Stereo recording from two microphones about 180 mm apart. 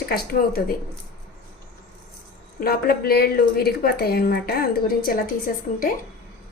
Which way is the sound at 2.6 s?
60° left (ahead or behind).